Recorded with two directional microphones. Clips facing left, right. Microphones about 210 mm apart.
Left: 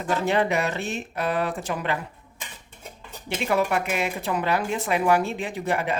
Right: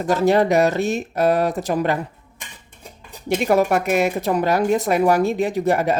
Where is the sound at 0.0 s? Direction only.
40° right (ahead or behind).